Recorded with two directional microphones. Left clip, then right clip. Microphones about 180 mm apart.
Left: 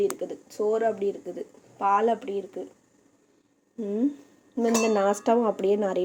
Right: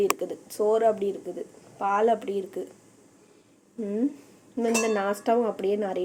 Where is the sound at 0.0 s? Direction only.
Centre (ahead or behind).